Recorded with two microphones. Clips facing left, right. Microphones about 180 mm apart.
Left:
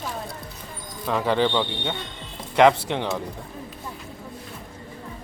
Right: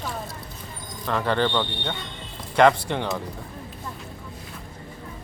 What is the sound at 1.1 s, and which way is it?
Speech, 5° left (ahead or behind).